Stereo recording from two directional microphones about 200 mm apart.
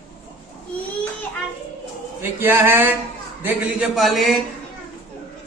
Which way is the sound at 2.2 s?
10° right (ahead or behind).